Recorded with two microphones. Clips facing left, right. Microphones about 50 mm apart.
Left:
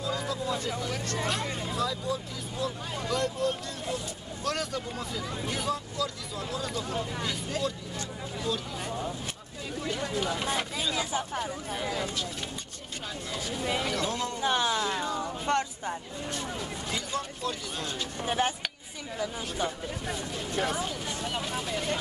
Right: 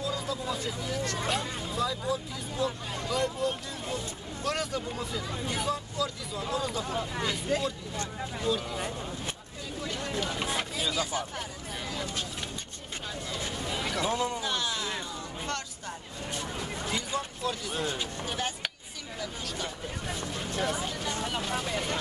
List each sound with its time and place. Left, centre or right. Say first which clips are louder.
0.0 s music: left 1 dB; centre
1.2 s speech: even; centre
10.4 s speech: left 1 dB; centre
11.0 s speech: left 1 dB; left
11.3 s speech: left 5 dB; centre
13.8 s speech: right 1 dB; centre
14.4 s speech: left 5 dB; left
15.1 s a sound: left 7 dB; left
16.3 s a sound: even; centre
17.7 s speech: right 3 dB; centre
18.2 s speech: left 9 dB; left
20.1 s speech: even; centre